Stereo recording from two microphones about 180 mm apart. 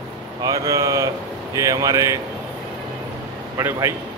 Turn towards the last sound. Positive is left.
turn(degrees=-15)  # may be behind; listen again after turning